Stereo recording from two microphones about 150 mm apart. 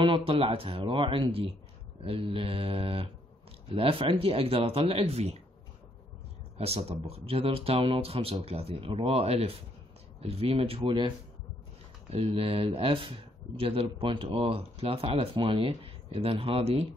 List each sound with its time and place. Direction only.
0.0 s speech: 35° right (ahead or behind)
6.6 s speech: 40° right (ahead or behind)